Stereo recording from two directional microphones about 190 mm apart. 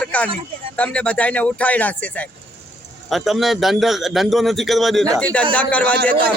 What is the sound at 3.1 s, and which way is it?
Speech, centre (ahead or behind).